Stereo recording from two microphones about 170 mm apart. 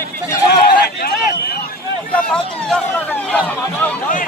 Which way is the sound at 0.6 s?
65° left (ahead or behind).